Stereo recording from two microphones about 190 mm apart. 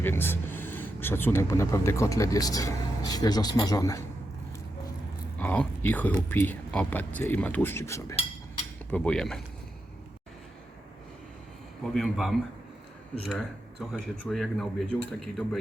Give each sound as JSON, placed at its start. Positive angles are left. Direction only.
{"t": 0.0, "sound": "speech", "side_deg": 10}
{"t": 5.4, "sound": "speech", "side_deg": 10}
{"t": 11.8, "sound": "speech", "side_deg": 0}